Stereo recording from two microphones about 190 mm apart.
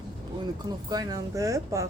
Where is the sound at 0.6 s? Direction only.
20° right (ahead or behind).